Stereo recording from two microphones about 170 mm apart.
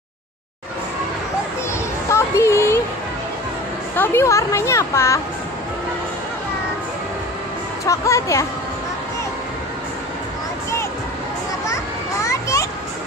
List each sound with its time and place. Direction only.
2.0 s a sound: 15° left (ahead or behind)
3.9 s speech: 15° left (ahead or behind)
7.8 s speech: 20° left (ahead or behind)
11.6 s children playing: 20° left (ahead or behind)